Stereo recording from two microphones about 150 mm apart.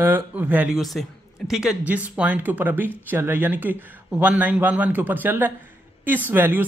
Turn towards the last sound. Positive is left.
turn(degrees=-15)  # may be behind; listen again after turning